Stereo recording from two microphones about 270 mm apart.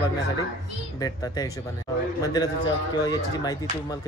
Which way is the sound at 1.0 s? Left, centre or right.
Centre.